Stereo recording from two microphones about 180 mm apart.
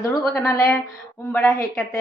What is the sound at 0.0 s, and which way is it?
Speech, 15° left (ahead or behind).